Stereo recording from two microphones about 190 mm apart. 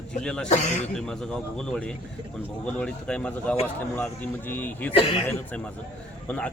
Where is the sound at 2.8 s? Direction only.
5° left (ahead or behind).